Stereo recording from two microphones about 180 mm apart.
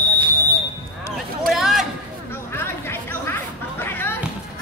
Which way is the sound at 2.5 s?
15° left (ahead or behind).